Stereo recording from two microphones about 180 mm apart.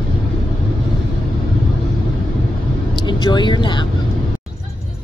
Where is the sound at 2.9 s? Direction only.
25° left (ahead or behind).